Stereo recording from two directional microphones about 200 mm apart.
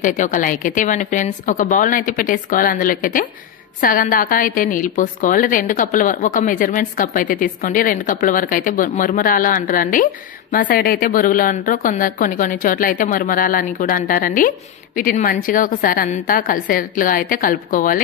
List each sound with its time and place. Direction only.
0.0 s a woman's voice: 40° left (ahead or behind)